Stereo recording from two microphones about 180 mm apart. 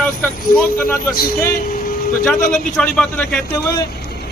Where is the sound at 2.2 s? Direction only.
Centre (ahead or behind).